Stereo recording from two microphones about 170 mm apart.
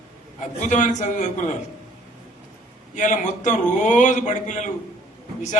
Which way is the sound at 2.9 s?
45° left (ahead or behind).